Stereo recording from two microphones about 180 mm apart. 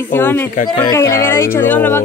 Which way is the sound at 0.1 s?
10° left (ahead or behind).